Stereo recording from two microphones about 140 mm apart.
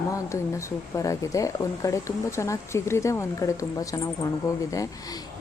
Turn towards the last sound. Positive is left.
turn(degrees=25)  # may be behind; listen again after turning